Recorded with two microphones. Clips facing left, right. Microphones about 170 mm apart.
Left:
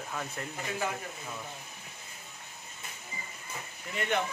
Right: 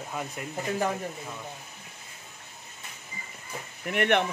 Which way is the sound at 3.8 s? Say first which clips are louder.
Right 7 dB; 70° right (ahead or behind).